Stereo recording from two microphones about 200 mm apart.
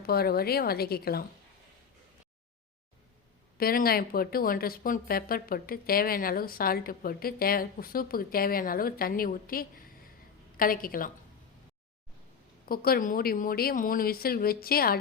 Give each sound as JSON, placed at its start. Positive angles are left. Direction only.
{"t": 0.0, "sound": "speech", "side_deg": 50}
{"t": 3.6, "sound": "speech", "side_deg": 50}
{"t": 12.6, "sound": "speech", "side_deg": 50}